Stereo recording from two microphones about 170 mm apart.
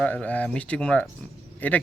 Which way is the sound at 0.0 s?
5° left (ahead or behind).